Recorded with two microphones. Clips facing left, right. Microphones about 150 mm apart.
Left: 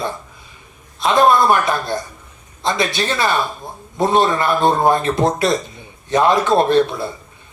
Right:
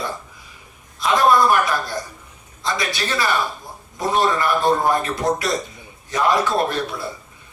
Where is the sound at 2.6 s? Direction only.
25° left (ahead or behind).